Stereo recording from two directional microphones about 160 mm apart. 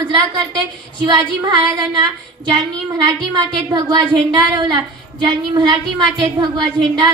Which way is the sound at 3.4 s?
25° right (ahead or behind).